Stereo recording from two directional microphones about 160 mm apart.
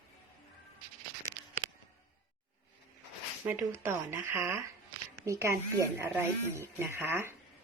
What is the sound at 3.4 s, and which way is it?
A woman's voice, 10° right (ahead or behind).